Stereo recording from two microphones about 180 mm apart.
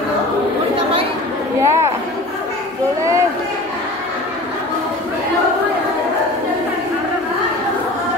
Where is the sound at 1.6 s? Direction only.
15° right (ahead or behind).